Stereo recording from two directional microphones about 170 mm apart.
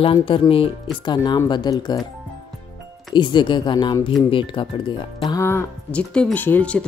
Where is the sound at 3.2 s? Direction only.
25° left (ahead or behind).